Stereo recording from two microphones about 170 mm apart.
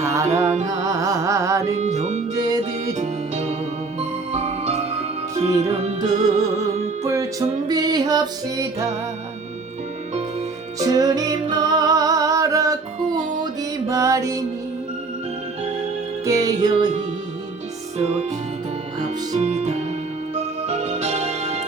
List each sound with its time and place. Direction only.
0.0 s music: 15° right (ahead or behind)
0.3 s music: 40° right (ahead or behind)
0.9 s carnatic music: 20° right (ahead or behind)
1.7 s music: 40° right (ahead or behind)
2.3 s music: 20° right (ahead or behind)
3.0 s music: 40° right (ahead or behind)
7.0 s music: 20° right (ahead or behind)
10.8 s music: 20° right (ahead or behind)
16.2 s music: 20° right (ahead or behind)
17.9 s music: 40° right (ahead or behind)
19.4 s music: 40° right (ahead or behind)